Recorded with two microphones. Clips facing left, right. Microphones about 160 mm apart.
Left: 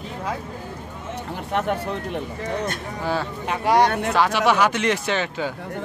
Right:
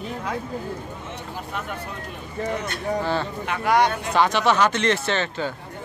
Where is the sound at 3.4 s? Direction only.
30° left (ahead or behind).